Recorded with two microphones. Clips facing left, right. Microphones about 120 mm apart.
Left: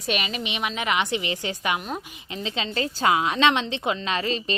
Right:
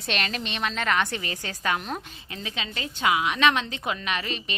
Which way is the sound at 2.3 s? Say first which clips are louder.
Left 6 dB; 25° left (ahead or behind).